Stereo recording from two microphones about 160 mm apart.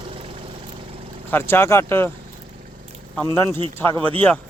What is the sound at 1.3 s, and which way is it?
Speech, 15° left (ahead or behind).